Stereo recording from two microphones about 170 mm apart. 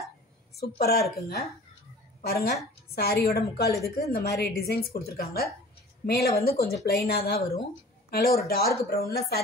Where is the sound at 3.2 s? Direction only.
70° left (ahead or behind).